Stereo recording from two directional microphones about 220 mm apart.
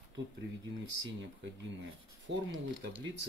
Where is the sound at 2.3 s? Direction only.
55° right (ahead or behind).